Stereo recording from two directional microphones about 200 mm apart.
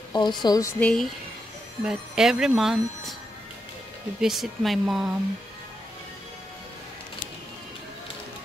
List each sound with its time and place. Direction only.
0.1 s speech: 20° left (ahead or behind); by 3.2 s centre (ahead or behind)
4.2 s speech: centre (ahead or behind)